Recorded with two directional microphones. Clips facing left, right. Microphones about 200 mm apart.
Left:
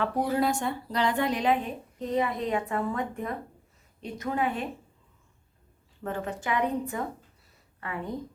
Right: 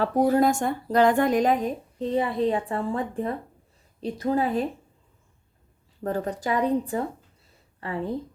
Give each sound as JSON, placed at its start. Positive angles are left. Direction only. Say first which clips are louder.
{"t": 0.0, "sound": "speech", "louder": "right 6 dB", "side_deg": -45}
{"t": 2.0, "sound": "speech", "louder": "right 4 dB", "side_deg": -30}
{"t": 6.0, "sound": "a woman's voice", "louder": "right 5 dB", "side_deg": -35}